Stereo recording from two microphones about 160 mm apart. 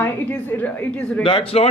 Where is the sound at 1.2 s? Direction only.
35° left (ahead or behind).